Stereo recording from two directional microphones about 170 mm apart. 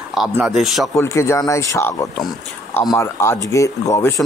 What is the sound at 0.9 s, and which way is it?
Speech, 15° left (ahead or behind).